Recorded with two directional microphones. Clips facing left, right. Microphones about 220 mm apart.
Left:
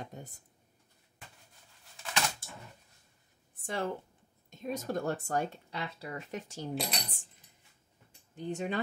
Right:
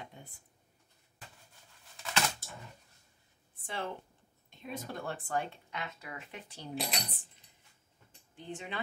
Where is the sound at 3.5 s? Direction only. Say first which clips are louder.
Left 5 dB; 45° left (ahead or behind).